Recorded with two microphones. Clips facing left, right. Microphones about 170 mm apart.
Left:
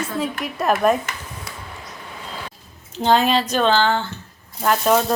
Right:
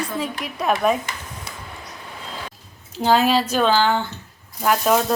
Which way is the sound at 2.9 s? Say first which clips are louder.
Even; 5° right (ahead or behind).